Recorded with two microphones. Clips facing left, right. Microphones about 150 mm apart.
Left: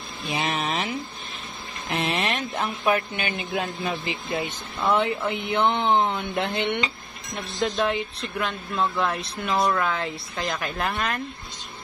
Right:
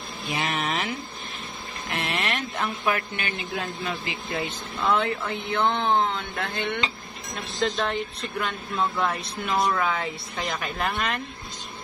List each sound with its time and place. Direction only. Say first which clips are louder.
0.3 s speech: left 1 dB; 20° left (ahead or behind)
1.9 s speech: left 3 dB; 20° left (ahead or behind)
7.5 s speech: left 2 dB; centre (ahead or behind)